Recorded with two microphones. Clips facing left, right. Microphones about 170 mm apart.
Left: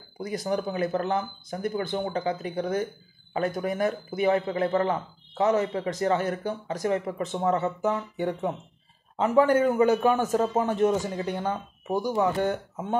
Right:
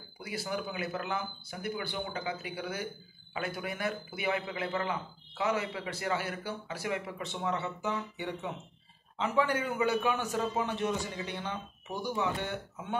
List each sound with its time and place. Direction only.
0.2 s a man's voice: 45° left (ahead or behind)